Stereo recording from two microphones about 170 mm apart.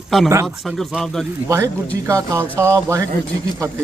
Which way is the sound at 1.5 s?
20° right (ahead or behind).